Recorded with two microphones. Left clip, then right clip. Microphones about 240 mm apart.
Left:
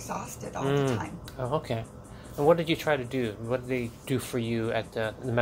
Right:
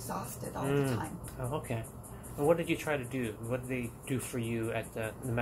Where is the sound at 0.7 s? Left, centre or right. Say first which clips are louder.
Left 5 dB; left.